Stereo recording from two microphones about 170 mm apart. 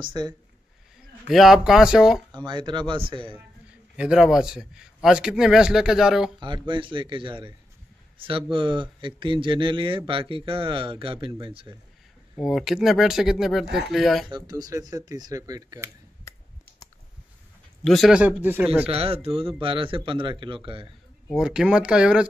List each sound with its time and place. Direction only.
0.0 s speech: 25° right (ahead or behind)
1.3 s a man's voice: centre (ahead or behind)
2.3 s speech: 25° right (ahead or behind)
3.9 s a man's voice: 5° right (ahead or behind)
6.4 s speech: 25° right (ahead or behind)
12.4 s a man's voice: centre (ahead or behind)
14.3 s speech: 20° right (ahead or behind)
17.8 s a man's voice: centre (ahead or behind)
18.9 s speech: 35° right (ahead or behind)
21.3 s a man's voice: 5° right (ahead or behind)